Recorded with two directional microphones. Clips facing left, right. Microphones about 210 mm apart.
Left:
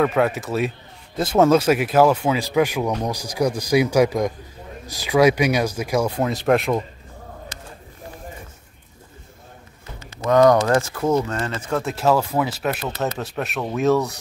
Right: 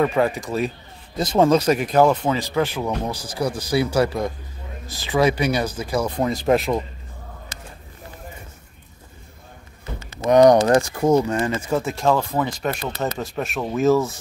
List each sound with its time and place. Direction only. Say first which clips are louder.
0.0 s speech: even; centre (ahead or behind)
10.2 s speech: right 2 dB; 20° right (ahead or behind)
11.9 s speech: left 3 dB; 5° left (ahead or behind)